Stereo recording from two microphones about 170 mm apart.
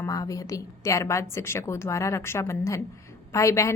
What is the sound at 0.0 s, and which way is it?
A woman's voice, 20° left (ahead or behind).